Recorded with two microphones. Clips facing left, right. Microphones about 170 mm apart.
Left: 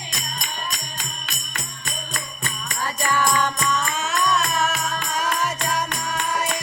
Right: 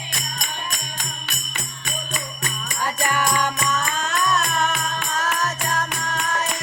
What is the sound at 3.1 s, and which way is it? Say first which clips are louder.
Music: left 3 dB; 15° right (ahead or behind).